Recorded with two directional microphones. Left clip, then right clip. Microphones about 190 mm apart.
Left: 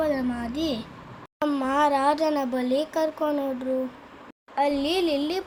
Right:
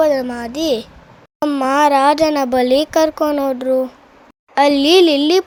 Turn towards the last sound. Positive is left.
turn(degrees=-50)  # may be behind; listen again after turning